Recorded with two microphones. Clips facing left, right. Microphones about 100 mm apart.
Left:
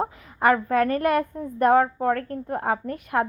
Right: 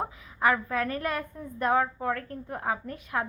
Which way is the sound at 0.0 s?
50° left (ahead or behind).